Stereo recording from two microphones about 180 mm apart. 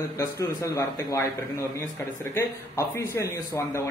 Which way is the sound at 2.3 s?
15° left (ahead or behind).